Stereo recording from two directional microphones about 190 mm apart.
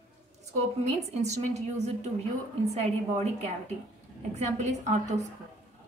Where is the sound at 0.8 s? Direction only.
35° right (ahead or behind).